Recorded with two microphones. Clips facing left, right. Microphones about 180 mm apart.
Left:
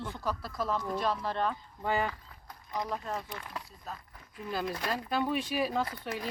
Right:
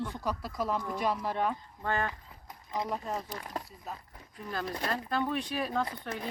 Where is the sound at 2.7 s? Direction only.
15° right (ahead or behind).